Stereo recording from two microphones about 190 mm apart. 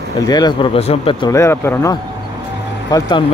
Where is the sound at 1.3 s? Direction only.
15° left (ahead or behind).